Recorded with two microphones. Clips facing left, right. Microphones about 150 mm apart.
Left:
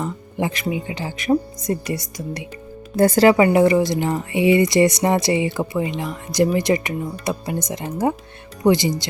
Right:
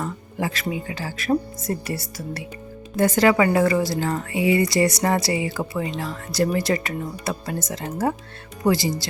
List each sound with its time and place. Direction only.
0.0 s speech: 20° left (ahead or behind)
2.9 s speech: 35° left (ahead or behind); by 8.9 s 20° left (ahead or behind)